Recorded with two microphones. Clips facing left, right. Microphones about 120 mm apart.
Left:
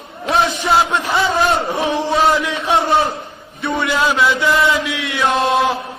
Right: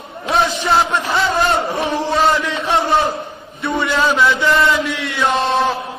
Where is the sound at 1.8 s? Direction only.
Centre (ahead or behind).